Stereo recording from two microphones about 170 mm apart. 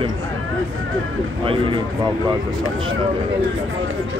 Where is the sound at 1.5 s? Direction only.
30° right (ahead or behind).